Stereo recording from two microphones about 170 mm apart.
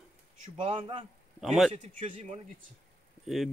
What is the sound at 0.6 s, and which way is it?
Speech, 30° right (ahead or behind).